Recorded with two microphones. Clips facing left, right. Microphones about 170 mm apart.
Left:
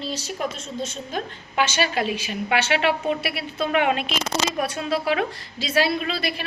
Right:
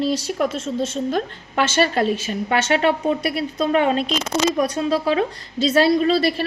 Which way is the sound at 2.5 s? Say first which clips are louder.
Right 3 dB; 35° right (ahead or behind).